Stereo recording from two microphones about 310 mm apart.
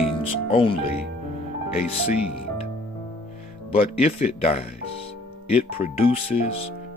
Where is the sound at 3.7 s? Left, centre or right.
Centre.